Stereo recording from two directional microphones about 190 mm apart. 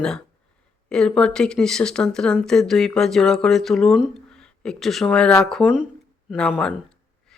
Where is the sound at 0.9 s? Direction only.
5° left (ahead or behind).